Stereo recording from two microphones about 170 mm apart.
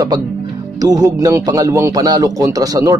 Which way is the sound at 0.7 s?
20° right (ahead or behind).